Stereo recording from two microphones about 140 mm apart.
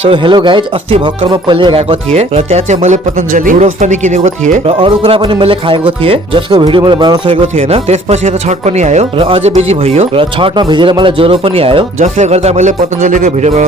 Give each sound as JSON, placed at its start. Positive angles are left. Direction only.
{"t": 0.1, "sound": "speech", "side_deg": -35}
{"t": 4.8, "sound": "speech", "side_deg": -40}
{"t": 7.4, "sound": "speech", "side_deg": -50}
{"t": 11.9, "sound": "speech", "side_deg": -55}